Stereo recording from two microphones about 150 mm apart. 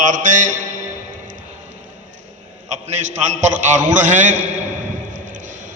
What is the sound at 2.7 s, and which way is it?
A man's voice, 50° right (ahead or behind).